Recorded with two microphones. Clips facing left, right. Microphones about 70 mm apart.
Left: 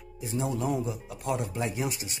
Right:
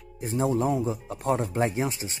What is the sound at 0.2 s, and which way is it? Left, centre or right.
Speech, right.